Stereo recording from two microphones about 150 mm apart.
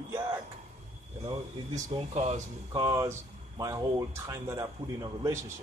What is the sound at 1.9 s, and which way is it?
Speech, 45° right (ahead or behind).